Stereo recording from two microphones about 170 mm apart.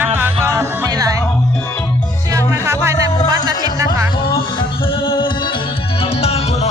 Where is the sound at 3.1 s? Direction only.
25° left (ahead or behind).